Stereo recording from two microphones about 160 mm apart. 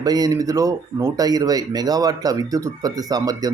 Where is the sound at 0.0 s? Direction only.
25° right (ahead or behind).